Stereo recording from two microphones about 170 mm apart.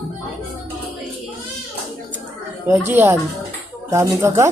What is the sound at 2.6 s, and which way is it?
Speech, 10° right (ahead or behind).